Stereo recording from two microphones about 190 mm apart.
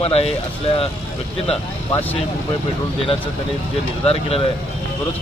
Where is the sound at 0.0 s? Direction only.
30° left (ahead or behind).